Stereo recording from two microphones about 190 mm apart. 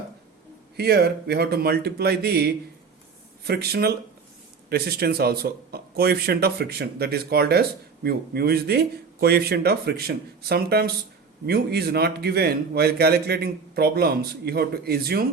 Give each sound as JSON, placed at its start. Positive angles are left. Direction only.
{"t": 0.8, "sound": "a man's voice", "side_deg": -60}